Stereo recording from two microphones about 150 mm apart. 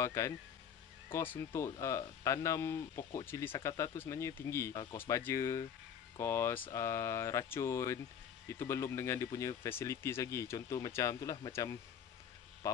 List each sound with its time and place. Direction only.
0.0 s speech: 20° left (ahead or behind)